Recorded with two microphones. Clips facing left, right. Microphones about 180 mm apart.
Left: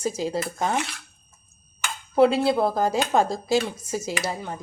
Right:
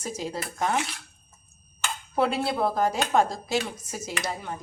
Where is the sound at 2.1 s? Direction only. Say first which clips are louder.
Left 7 dB; 30° left (ahead or behind).